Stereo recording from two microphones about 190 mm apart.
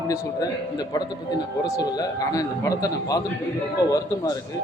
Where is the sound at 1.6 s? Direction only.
20° left (ahead or behind).